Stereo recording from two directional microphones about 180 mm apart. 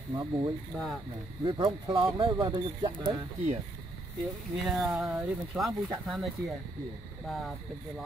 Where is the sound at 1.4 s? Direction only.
25° right (ahead or behind).